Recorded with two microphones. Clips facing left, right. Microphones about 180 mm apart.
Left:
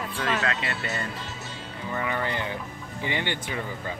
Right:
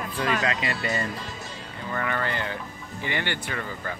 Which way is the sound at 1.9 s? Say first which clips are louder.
Even; 15° left (ahead or behind).